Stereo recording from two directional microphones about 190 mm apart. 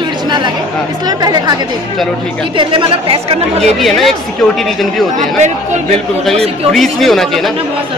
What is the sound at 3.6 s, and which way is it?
Speech, centre (ahead or behind).